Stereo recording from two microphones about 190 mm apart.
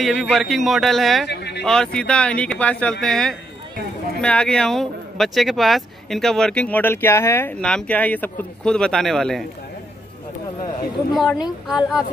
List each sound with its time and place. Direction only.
0.0 s speech: centre (ahead or behind)
1.2 s speech: 60° left (ahead or behind)
1.6 s speech: 5° left (ahead or behind)
11.1 s speech: centre (ahead or behind)